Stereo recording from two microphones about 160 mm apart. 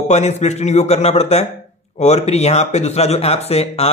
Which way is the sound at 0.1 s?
45° left (ahead or behind).